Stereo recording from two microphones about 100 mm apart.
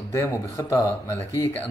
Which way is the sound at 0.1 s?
30° left (ahead or behind).